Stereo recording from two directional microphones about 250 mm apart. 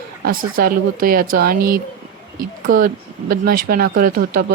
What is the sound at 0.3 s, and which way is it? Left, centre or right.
A woman's voice, right.